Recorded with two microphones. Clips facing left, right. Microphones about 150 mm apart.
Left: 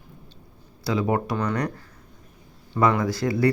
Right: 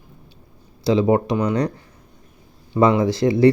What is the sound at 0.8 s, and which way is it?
Speech, 25° right (ahead or behind).